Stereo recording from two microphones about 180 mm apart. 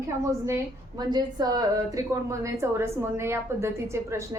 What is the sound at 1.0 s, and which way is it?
A woman's voice, 25° right (ahead or behind).